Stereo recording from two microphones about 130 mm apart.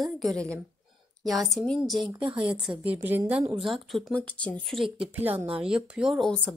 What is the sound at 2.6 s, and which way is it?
Speech, 10° right (ahead or behind).